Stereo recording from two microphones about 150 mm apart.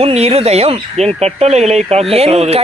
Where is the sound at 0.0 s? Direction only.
45° right (ahead or behind).